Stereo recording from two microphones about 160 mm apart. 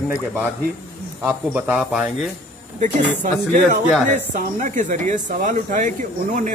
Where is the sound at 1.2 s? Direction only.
10° right (ahead or behind).